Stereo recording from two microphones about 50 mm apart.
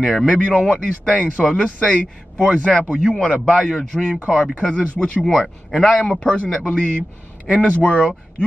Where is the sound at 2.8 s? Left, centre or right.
Left; by 5.9 s centre.